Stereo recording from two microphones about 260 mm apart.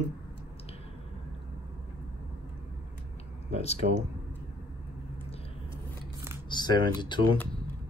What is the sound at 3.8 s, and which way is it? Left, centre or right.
Speech, right.